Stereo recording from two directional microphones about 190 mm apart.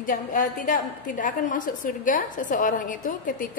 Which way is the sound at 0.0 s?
45° left (ahead or behind).